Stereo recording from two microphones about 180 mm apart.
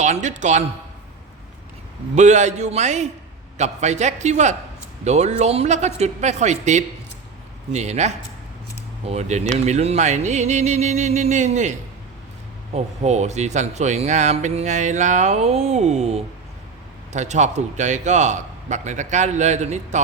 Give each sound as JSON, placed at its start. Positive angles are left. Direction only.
{"t": 0.0, "sound": "speech", "side_deg": -40}
{"t": 2.1, "sound": "speech", "side_deg": -40}
{"t": 12.7, "sound": "speech", "side_deg": -40}